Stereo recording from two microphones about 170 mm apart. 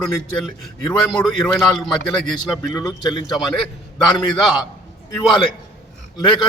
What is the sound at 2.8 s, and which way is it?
Speech, 20° left (ahead or behind).